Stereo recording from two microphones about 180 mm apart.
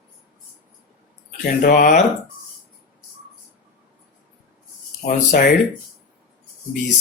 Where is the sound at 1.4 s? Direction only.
55° left (ahead or behind).